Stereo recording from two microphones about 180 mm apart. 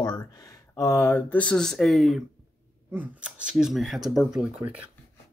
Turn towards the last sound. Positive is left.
turn(degrees=-5)  # may be behind; listen again after turning